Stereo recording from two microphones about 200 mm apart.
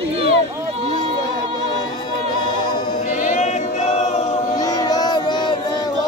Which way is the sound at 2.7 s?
20° left (ahead or behind).